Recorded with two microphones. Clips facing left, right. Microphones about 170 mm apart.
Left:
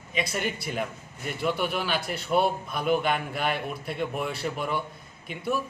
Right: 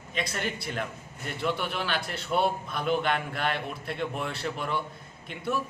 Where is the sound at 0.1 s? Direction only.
10° left (ahead or behind).